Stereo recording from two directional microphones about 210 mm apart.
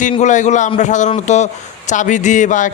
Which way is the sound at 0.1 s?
35° left (ahead or behind).